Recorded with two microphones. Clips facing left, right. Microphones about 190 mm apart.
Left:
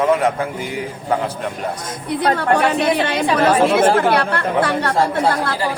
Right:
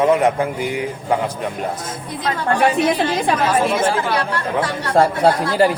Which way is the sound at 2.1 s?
65° left (ahead or behind).